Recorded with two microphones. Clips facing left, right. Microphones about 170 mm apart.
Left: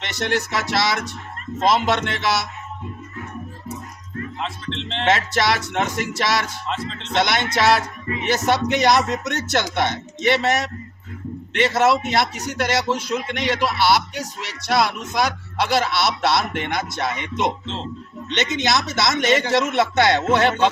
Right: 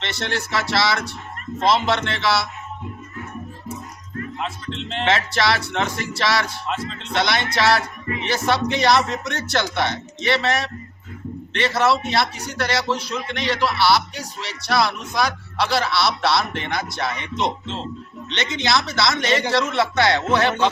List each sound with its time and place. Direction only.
0.0 s speech: 15° left (ahead or behind)
4.4 s speech: 5° right (ahead or behind)
5.0 s speech: 20° left (ahead or behind)